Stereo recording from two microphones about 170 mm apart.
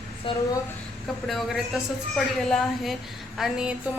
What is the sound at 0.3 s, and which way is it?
Speech, 30° left (ahead or behind).